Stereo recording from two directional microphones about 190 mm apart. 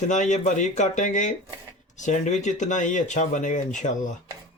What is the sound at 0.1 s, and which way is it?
Speech, 40° left (ahead or behind).